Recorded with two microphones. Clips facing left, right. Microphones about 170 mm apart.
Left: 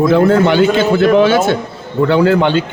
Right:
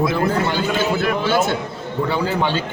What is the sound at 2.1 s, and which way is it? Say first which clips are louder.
Speech: left 10 dB; 75° left (ahead or behind).